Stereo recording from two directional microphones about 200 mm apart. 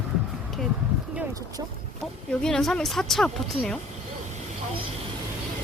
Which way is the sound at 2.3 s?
5° left (ahead or behind).